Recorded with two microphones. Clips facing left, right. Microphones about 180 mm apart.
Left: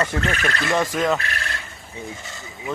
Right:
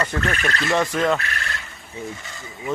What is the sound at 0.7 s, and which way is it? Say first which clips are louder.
Speech: right 1 dB; centre (ahead or behind).